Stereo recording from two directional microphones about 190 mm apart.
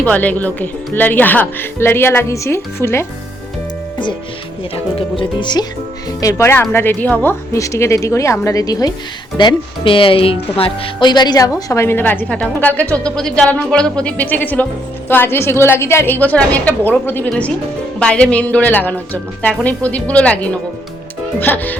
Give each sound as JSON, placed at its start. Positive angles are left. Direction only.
{"t": 0.0, "sound": "a woman's voice", "side_deg": 10}
{"t": 4.7, "sound": "a woman's voice", "side_deg": 30}